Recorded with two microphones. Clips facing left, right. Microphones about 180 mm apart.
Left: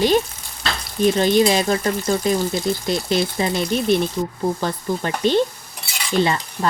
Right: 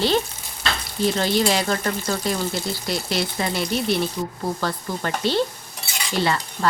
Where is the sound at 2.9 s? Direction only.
20° left (ahead or behind).